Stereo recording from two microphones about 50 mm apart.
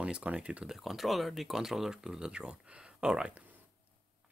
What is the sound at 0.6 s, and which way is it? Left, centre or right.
Speech, centre.